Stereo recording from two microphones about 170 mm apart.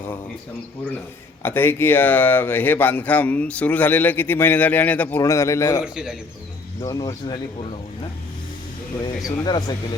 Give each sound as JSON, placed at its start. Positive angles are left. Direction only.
{"t": 1.4, "sound": "speech", "side_deg": 10}
{"t": 5.8, "sound": "a man's voice", "side_deg": -5}
{"t": 6.8, "sound": "speech", "side_deg": 20}
{"t": 9.4, "sound": "speech", "side_deg": 25}